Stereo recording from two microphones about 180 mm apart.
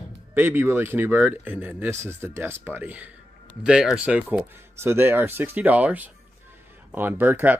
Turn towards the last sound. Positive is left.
turn(degrees=-10)  # may be behind; listen again after turning